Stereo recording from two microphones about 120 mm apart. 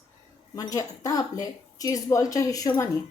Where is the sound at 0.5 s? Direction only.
30° left (ahead or behind).